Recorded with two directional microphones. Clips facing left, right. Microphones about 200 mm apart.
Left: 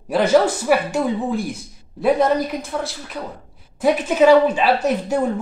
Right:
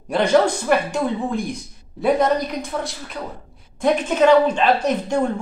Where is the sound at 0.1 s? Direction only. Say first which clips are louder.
Left 1 dB; 5° left (ahead or behind).